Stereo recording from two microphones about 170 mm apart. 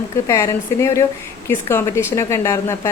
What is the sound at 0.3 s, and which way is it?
A woman's voice, 15° left (ahead or behind).